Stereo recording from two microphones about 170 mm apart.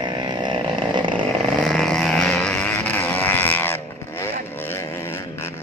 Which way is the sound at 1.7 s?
5° left (ahead or behind).